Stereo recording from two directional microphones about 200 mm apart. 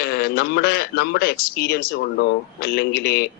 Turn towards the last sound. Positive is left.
turn(degrees=55)  # may be behind; listen again after turning